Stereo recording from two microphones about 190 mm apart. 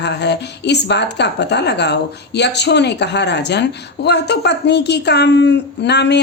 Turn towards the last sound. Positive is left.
turn(degrees=60)  # may be behind; listen again after turning